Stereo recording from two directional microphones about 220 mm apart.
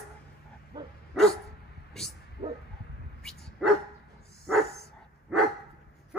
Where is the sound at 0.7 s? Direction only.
20° right (ahead or behind).